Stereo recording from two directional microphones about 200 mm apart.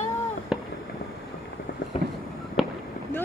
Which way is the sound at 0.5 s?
5° right (ahead or behind).